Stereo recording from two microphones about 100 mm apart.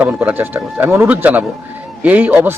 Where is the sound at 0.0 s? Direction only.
15° right (ahead or behind).